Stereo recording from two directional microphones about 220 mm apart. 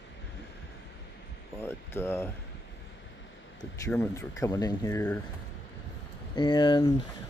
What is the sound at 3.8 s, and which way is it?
Speech, 10° left (ahead or behind).